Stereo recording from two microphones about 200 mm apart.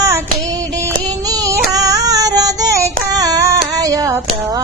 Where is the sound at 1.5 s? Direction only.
15° right (ahead or behind).